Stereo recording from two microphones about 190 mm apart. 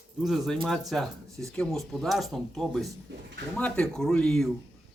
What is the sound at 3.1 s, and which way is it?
Speech, 70° right (ahead or behind).